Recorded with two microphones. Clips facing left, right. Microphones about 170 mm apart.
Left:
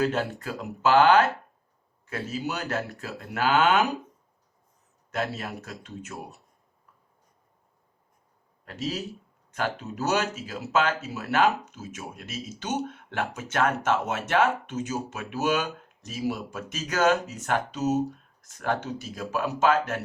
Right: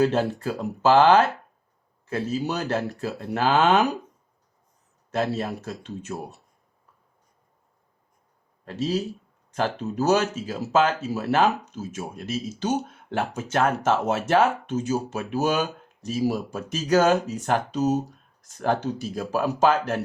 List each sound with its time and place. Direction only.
0.0 s speech: 30° right (ahead or behind)
5.1 s speech: 30° right (ahead or behind)
8.6 s speech: 30° right (ahead or behind)